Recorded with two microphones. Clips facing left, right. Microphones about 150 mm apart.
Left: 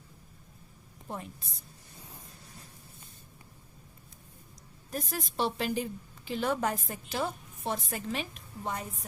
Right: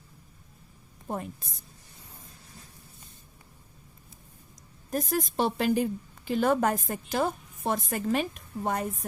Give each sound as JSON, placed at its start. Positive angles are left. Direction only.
{"t": 1.0, "sound": "a woman's voice", "side_deg": -50}
{"t": 4.9, "sound": "a woman's voice", "side_deg": -45}